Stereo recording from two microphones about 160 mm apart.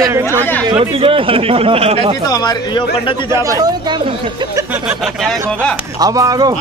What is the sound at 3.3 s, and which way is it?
Speech, 20° right (ahead or behind).